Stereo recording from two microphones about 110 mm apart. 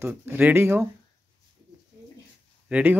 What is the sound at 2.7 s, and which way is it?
Speech, 15° right (ahead or behind).